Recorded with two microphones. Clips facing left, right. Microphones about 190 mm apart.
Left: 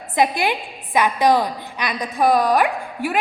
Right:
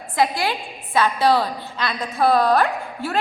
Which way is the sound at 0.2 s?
20° left (ahead or behind).